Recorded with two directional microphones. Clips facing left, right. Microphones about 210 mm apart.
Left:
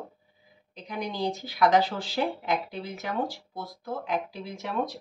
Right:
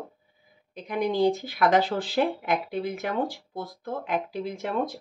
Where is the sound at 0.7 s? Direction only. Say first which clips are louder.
Right 7 dB; 55° right (ahead or behind).